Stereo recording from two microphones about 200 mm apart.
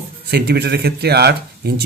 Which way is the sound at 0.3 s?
55° right (ahead or behind).